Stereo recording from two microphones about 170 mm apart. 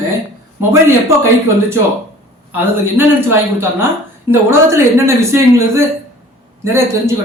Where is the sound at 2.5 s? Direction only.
10° right (ahead or behind).